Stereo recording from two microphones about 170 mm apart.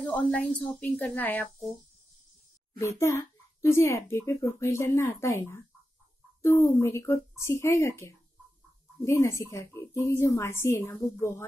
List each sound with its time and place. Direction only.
0.0 s a child's voice: 10° left (ahead or behind)
2.8 s a child's voice: 15° left (ahead or behind)
6.6 s a child's voice: 15° left (ahead or behind)